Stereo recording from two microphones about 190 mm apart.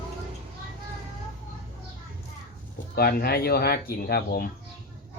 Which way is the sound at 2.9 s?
55° left (ahead or behind).